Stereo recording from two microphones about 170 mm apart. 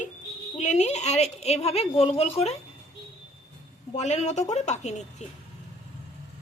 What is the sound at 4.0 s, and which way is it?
A woman's voice, 40° left (ahead or behind).